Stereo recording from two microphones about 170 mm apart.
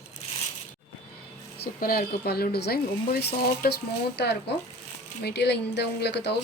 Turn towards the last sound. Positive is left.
turn(degrees=85)